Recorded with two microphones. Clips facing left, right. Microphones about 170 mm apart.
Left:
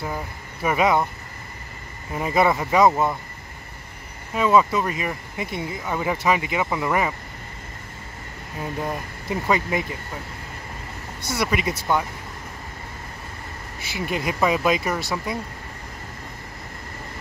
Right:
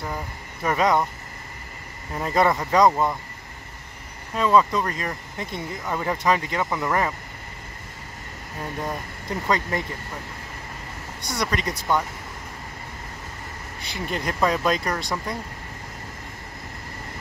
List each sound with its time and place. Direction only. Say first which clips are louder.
0.0 s speech: left 2 dB; 5° left (ahead or behind)
2.1 s speech: left 1 dB; 10° left (ahead or behind)
4.3 s speech: left 1 dB; 10° left (ahead or behind)
8.8 s speech: left 2 dB; 10° left (ahead or behind)
11.1 s speech: left 3 dB; 5° left (ahead or behind)
13.7 s speech: left 2 dB; 5° left (ahead or behind)